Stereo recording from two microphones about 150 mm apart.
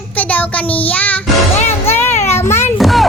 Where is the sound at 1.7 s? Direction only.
15° left (ahead or behind).